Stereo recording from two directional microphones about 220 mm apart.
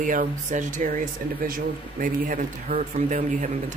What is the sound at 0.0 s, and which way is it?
Speech, 35° right (ahead or behind).